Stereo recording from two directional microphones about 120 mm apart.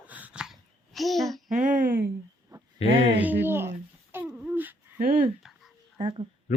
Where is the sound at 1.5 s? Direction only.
90° right.